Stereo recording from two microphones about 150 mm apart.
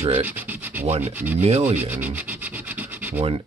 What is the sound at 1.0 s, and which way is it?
Rub, 10° right (ahead or behind).